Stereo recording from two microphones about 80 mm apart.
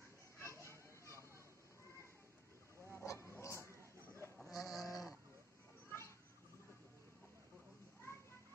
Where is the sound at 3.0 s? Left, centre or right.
Left.